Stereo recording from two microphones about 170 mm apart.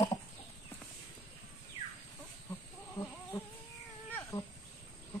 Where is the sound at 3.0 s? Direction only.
35° left (ahead or behind).